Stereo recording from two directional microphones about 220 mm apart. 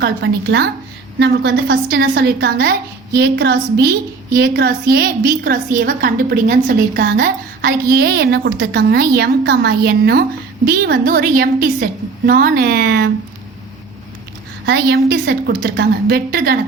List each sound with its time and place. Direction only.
0.0 s a woman's voice: 50° right (ahead or behind)
14.6 s a woman's voice: 50° right (ahead or behind)